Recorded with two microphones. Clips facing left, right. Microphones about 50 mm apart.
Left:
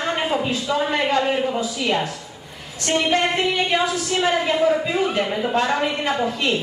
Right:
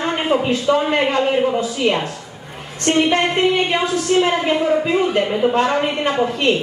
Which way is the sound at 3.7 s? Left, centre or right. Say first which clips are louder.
Right 3 dB; right.